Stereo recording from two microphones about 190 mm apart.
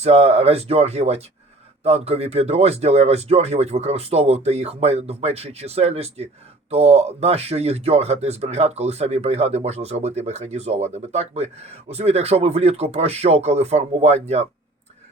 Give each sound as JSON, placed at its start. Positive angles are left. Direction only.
{"t": 0.0, "sound": "speech", "side_deg": -35}